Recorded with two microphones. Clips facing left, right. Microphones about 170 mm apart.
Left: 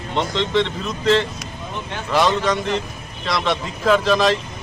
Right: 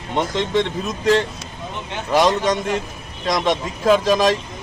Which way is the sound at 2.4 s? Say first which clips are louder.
Right 1 dB; 20° right (ahead or behind).